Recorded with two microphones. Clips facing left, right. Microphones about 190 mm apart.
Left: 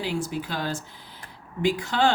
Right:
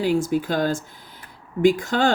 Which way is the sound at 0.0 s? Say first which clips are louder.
Right 8 dB; 45° right (ahead or behind).